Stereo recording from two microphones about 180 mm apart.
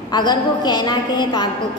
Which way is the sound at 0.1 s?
25° left (ahead or behind).